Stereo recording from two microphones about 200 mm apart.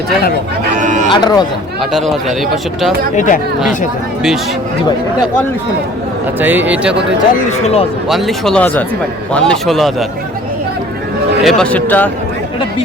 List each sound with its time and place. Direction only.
0.8 s speech: 40° right (ahead or behind)
1.1 s speech: 20° left (ahead or behind)
1.8 s speech: centre (ahead or behind)
3.2 s speech: 40° left (ahead or behind)
6.4 s a man's voice: 10° right (ahead or behind)
7.3 s speech: 30° left (ahead or behind)
8.0 s speech: centre (ahead or behind)
11.4 s speech: 5° left (ahead or behind)